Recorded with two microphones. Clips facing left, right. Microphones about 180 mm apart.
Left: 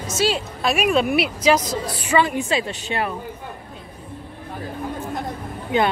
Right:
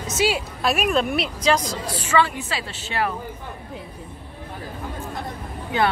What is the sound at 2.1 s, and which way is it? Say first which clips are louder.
A woman's voice: left 2 dB; 15° left (ahead or behind).